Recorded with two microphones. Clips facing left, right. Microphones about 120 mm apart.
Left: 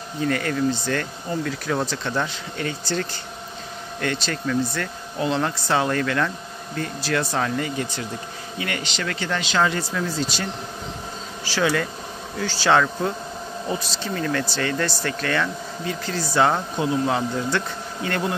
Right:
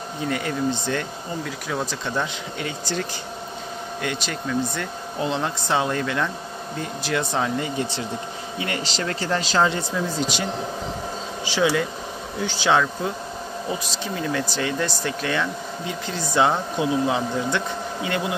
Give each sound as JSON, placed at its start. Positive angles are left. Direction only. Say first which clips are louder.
{"t": 0.3, "sound": "a man's voice", "louder": "left 1 dB", "side_deg": -15}
{"t": 9.6, "sound": "speech", "louder": "even", "side_deg": -20}